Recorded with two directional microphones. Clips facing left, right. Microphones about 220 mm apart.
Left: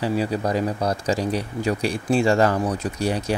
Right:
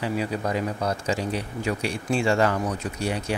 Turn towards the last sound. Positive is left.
turn(degrees=40)  # may be behind; listen again after turning